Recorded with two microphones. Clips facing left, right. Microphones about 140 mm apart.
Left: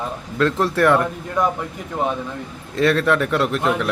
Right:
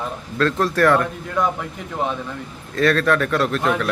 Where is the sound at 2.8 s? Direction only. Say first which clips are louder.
Even; 20° left (ahead or behind).